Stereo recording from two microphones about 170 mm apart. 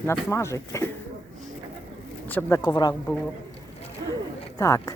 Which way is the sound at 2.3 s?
10° left (ahead or behind).